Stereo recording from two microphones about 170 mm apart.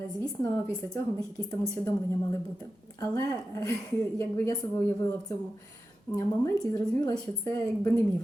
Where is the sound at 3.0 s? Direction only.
15° left (ahead or behind).